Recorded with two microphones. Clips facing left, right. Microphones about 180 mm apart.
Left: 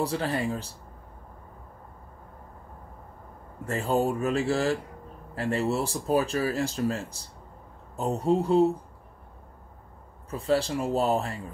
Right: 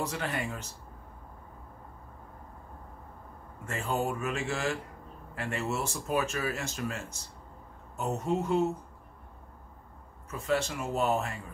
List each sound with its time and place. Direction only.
0.0 s speech: 35° left (ahead or behind)
3.6 s speech: 35° left (ahead or behind)
10.3 s speech: 30° left (ahead or behind)